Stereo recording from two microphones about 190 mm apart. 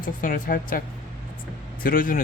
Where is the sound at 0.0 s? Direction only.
45° left (ahead or behind).